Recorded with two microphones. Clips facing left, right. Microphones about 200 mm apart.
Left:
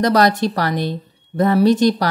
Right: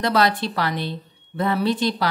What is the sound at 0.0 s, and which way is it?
A woman's voice, 45° left (ahead or behind).